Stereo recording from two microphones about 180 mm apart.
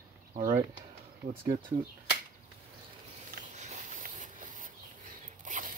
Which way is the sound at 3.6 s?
40° right (ahead or behind).